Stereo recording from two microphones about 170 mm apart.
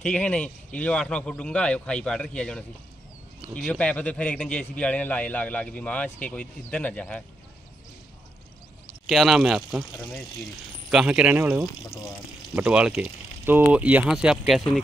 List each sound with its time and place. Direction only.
0.0 s a man's voice: 5° left (ahead or behind)
9.0 s speech: centre (ahead or behind)
10.9 s speech: 5° right (ahead or behind)